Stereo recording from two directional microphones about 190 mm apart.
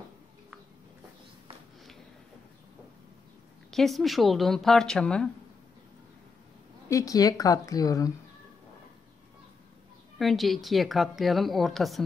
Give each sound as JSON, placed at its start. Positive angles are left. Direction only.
{"t": 3.7, "sound": "a woman's voice", "side_deg": 0}
{"t": 6.9, "sound": "speech", "side_deg": 15}
{"t": 10.1, "sound": "a woman's voice", "side_deg": 0}